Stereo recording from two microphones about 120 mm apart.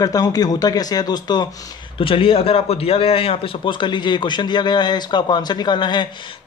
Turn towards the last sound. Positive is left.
turn(degrees=40)  # may be behind; listen again after turning